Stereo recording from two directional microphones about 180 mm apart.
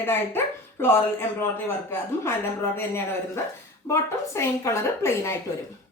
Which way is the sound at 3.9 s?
15° left (ahead or behind).